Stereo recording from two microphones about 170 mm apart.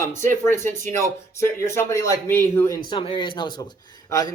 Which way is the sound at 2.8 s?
30° left (ahead or behind).